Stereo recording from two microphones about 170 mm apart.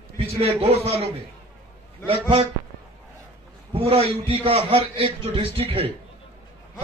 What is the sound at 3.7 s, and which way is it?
A man's voice, 35° right (ahead or behind).